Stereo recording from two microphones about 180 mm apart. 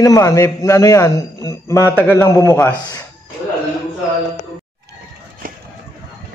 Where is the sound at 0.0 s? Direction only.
15° left (ahead or behind).